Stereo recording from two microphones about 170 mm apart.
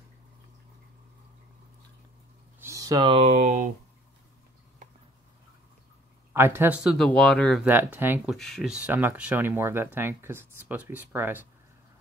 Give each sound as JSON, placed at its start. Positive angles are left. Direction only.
{"t": 2.6, "sound": "a sound", "side_deg": -20}
{"t": 3.2, "sound": "speech", "side_deg": -45}
{"t": 6.3, "sound": "speech", "side_deg": -15}
{"t": 7.6, "sound": "speech", "side_deg": -10}
{"t": 8.3, "sound": "speech", "side_deg": 0}